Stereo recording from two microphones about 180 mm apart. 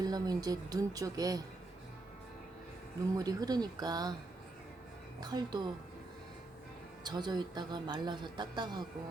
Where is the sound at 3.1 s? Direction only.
20° right (ahead or behind).